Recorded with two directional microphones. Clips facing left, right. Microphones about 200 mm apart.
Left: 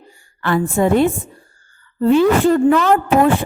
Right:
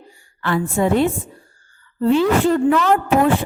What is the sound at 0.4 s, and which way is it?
A woman's voice, 50° left (ahead or behind).